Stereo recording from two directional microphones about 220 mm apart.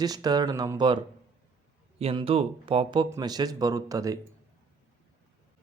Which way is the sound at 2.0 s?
25° right (ahead or behind).